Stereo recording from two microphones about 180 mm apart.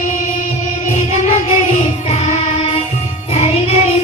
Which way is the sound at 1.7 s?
40° left (ahead or behind).